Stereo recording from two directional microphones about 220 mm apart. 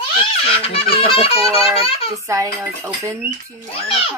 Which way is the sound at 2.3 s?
15° right (ahead or behind).